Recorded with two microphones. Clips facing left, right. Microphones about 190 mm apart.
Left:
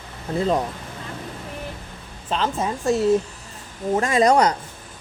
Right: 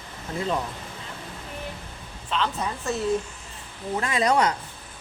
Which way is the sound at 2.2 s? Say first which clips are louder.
Left 4 dB; 45° left (ahead or behind).